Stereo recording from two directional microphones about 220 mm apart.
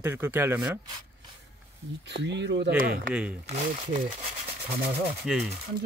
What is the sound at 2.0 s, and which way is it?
Speech, 55° right (ahead or behind).